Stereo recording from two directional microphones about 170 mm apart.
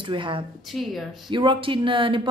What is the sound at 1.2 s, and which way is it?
Speech, 30° right (ahead or behind).